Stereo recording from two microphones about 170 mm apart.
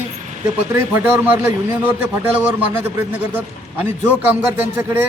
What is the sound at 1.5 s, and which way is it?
A man's voice, 10° right (ahead or behind).